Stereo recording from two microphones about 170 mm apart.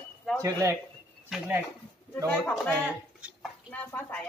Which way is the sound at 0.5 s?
20° right (ahead or behind).